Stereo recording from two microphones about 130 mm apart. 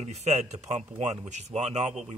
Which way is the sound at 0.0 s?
60° right (ahead or behind).